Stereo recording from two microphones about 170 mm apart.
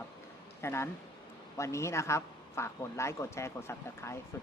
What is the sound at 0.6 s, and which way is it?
A man's voice, 15° left (ahead or behind).